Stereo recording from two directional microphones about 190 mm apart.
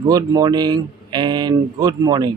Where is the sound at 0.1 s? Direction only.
20° right (ahead or behind).